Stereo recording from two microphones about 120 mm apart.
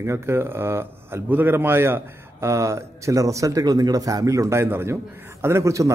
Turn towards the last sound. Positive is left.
turn(degrees=-25)  # may be behind; listen again after turning